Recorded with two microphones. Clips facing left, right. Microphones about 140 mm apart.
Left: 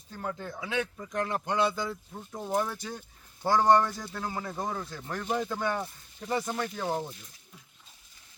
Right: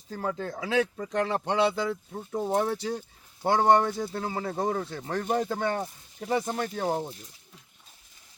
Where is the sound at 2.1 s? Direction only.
30° right (ahead or behind).